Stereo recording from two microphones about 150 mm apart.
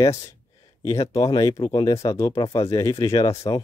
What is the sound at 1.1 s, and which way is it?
Speech, 25° left (ahead or behind).